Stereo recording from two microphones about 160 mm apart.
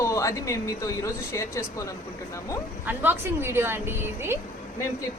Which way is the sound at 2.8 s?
10° right (ahead or behind).